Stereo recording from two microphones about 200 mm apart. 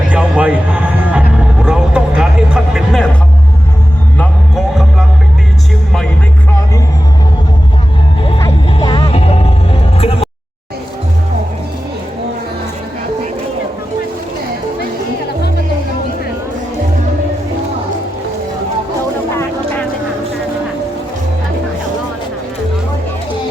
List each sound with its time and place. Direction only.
0.1 s music: 5° right (ahead or behind)
4.2 s music: centre (ahead or behind)
8.4 s music: 15° left (ahead or behind)